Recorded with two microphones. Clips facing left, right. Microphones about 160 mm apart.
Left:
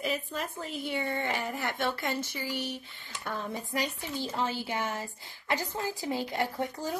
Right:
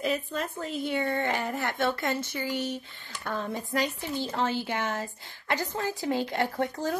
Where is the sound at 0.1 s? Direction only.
45° right (ahead or behind).